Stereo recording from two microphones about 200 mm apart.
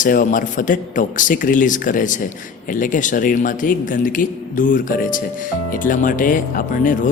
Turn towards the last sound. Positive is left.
turn(degrees=40)  # may be behind; listen again after turning